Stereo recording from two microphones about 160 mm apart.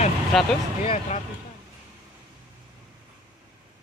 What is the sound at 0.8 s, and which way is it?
Speech, 40° left (ahead or behind).